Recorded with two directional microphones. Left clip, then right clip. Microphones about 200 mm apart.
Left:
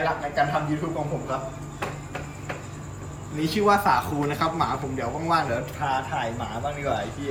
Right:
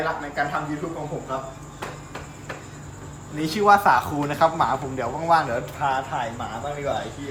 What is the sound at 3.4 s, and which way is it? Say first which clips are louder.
A man's voice: right 4 dB; 20° right (ahead or behind).